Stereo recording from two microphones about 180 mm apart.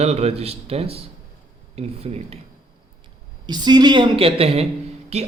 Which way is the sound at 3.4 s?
25° right (ahead or behind).